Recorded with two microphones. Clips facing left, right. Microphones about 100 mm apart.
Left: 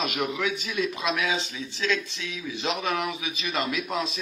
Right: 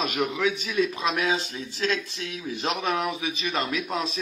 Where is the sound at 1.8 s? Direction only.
40° right (ahead or behind).